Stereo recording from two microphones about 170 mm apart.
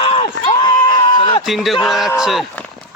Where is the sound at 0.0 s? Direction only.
35° left (ahead or behind).